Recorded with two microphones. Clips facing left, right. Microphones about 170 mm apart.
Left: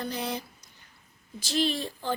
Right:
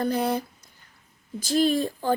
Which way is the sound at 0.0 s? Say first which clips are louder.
Right 8 dB; 55° right (ahead or behind).